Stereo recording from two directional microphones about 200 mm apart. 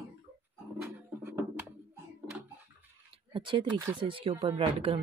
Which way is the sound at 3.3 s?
25° right (ahead or behind).